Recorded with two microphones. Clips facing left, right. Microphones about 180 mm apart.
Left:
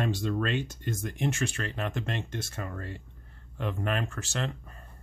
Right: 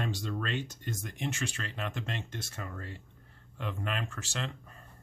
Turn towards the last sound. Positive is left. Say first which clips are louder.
# left 5 dB
turn(degrees=50)  # may be behind; listen again after turning